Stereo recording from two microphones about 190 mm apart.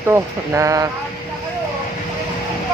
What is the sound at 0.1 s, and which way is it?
Speech, 15° right (ahead or behind).